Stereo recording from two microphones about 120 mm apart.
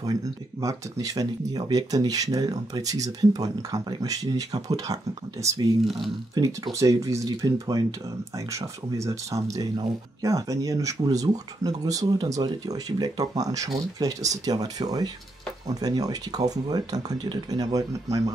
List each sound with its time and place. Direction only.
0.0 s speech: 30° right (ahead or behind)